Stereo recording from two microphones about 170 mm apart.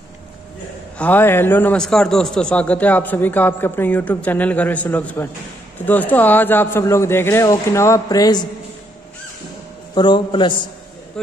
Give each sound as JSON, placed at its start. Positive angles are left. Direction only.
{"t": 0.9, "sound": "a man's voice", "side_deg": 10}
{"t": 9.9, "sound": "a man's voice", "side_deg": 25}